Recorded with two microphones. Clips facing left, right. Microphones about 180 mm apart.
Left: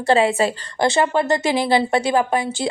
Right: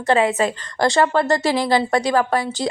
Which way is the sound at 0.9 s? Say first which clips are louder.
Right 1 dB; 15° left (ahead or behind).